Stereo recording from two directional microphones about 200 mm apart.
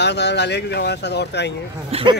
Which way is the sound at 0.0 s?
55° left (ahead or behind).